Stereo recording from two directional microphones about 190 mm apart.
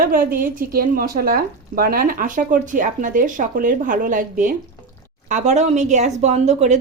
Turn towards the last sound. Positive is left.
turn(degrees=-35)  # may be behind; listen again after turning